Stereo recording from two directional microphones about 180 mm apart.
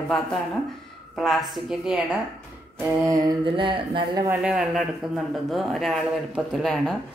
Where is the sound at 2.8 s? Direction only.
15° right (ahead or behind).